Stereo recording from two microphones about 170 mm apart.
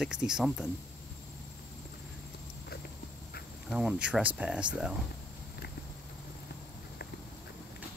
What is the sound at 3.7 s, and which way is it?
Speech, 5° right (ahead or behind).